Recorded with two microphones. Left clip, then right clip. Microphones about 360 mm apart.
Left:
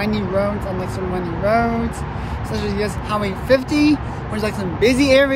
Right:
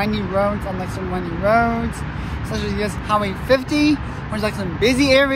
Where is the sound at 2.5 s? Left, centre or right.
Centre.